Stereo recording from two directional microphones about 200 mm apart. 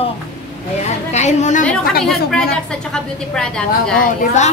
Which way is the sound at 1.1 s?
35° left (ahead or behind).